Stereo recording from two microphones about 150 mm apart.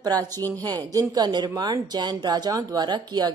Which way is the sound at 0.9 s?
25° right (ahead or behind).